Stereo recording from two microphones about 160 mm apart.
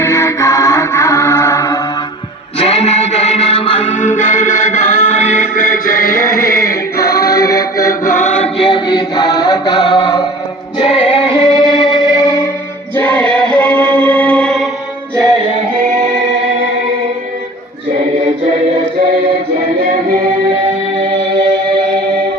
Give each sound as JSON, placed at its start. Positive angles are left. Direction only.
{"t": 0.0, "sound": "music", "side_deg": 20}
{"t": 2.6, "sound": "music", "side_deg": 40}
{"t": 7.4, "sound": "music", "side_deg": 20}
{"t": 7.9, "sound": "chant", "side_deg": 55}
{"t": 8.6, "sound": "chant", "side_deg": 30}
{"t": 10.8, "sound": "music", "side_deg": 35}
{"t": 13.0, "sound": "music", "side_deg": 10}